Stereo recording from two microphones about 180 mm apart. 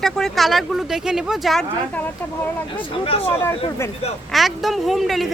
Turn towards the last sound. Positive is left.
turn(degrees=0)  # may be behind; listen again after turning